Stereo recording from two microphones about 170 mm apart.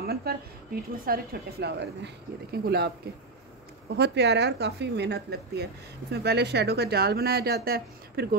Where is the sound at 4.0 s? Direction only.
85° right; by 8.2 s 65° right (ahead or behind).